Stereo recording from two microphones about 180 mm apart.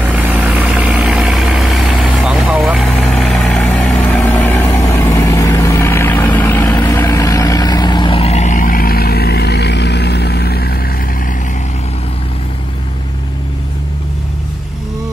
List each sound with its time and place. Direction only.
0.0 s vehicle: 10° right (ahead or behind); by 10.8 s 60° left (ahead or behind)